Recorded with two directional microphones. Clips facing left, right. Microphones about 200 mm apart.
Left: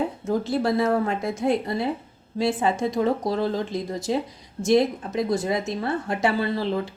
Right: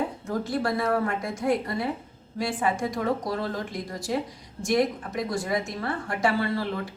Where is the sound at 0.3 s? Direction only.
25° left (ahead or behind).